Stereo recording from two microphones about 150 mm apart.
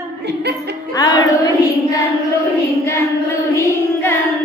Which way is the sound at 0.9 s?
25° left (ahead or behind).